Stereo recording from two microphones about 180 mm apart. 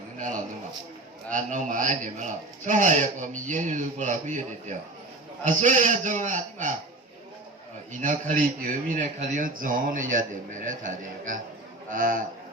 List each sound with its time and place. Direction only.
1.3 s a man's voice: 45° right (ahead or behind)
8.0 s a man's voice: 45° right (ahead or behind)